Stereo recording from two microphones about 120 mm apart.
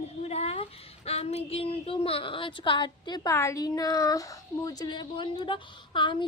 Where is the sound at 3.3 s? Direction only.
25° left (ahead or behind).